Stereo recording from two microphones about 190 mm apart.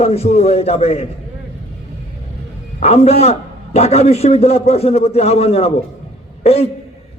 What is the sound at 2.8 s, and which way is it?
A man's voice, 35° left (ahead or behind).